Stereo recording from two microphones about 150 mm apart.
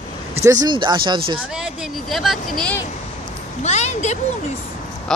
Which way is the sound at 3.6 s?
50° left (ahead or behind).